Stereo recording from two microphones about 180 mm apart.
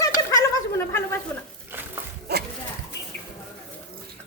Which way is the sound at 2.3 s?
65° right (ahead or behind).